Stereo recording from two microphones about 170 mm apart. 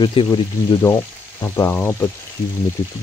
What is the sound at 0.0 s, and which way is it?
Speech, 30° left (ahead or behind).